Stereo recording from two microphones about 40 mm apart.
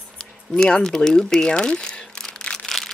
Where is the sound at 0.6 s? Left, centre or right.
Centre.